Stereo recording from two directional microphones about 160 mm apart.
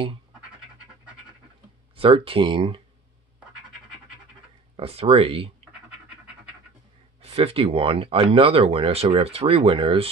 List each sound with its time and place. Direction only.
2.0 s speech: 35° right (ahead or behind)
4.7 s speech: 40° right (ahead or behind)
7.2 s speech: 40° right (ahead or behind)